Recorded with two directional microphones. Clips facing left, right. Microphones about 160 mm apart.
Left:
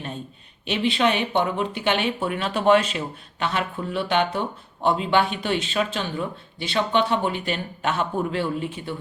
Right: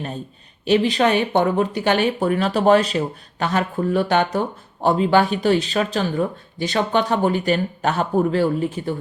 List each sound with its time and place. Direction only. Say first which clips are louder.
0.6 s speech: right 5 dB; 40° right (ahead or behind)